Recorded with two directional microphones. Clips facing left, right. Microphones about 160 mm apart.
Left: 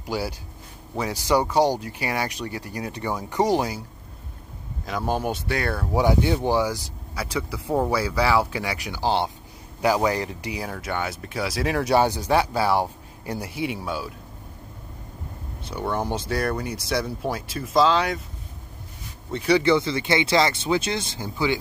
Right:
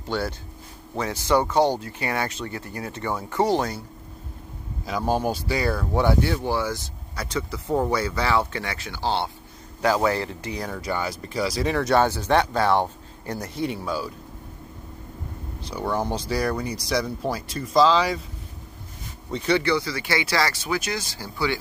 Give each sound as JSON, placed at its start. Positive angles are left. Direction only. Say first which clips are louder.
{"t": 0.0, "sound": "speech", "louder": "right 1 dB", "side_deg": 10}
{"t": 4.8, "sound": "speech", "louder": "right 2 dB", "side_deg": 0}
{"t": 5.9, "sound": "speech", "louder": "left 2 dB", "side_deg": 15}
{"t": 15.6, "sound": "speech", "louder": "right 1 dB", "side_deg": 0}
{"t": 19.3, "sound": "speech", "louder": "left 2 dB", "side_deg": 10}
{"t": 19.6, "sound": "speech", "louder": "left 4 dB", "side_deg": 25}